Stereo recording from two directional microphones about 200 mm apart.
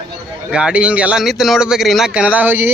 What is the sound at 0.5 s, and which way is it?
A man's voice, 5° right (ahead or behind).